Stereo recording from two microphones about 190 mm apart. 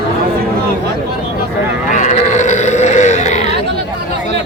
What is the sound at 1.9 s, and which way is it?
Grunt, 40° left (ahead or behind).